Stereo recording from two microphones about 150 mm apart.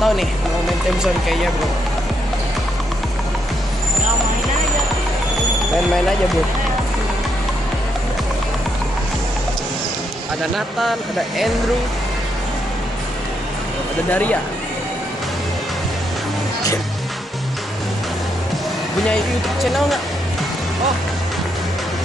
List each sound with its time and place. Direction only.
0.0 s music: centre (ahead or behind)
1.0 s speech: centre (ahead or behind)
10.8 s speech: centre (ahead or behind)
14.1 s speech: 10° left (ahead or behind)
19.6 s speech: centre (ahead or behind)